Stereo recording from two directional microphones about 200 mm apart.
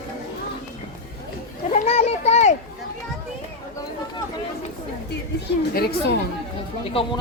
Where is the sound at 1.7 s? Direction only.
35° left (ahead or behind).